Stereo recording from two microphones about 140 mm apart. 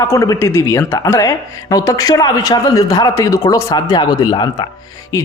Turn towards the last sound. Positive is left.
turn(degrees=25)  # may be behind; listen again after turning